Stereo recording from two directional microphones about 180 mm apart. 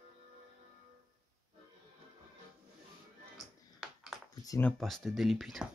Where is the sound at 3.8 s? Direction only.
Centre (ahead or behind).